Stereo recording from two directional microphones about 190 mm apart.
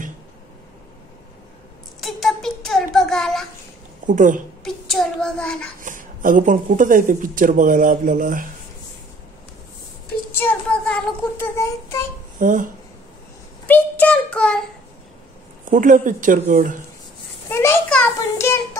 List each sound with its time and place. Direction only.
2.0 s a sound: centre (ahead or behind)
4.0 s a woman's voice: 45° right (ahead or behind)
4.6 s a child's voice: centre (ahead or behind)
5.8 s speech: 45° right (ahead or behind)
10.3 s child singing: 10° left (ahead or behind)
12.4 s speech: 45° right (ahead or behind)
13.7 s child singing: 10° left (ahead or behind)
15.7 s speech: 45° right (ahead or behind)
17.5 s a sound: 10° left (ahead or behind)